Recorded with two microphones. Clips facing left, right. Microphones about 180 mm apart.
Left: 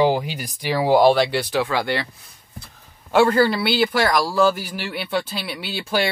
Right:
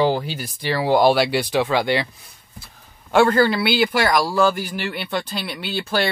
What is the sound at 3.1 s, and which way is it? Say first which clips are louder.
Speech: even; 5° left (ahead or behind).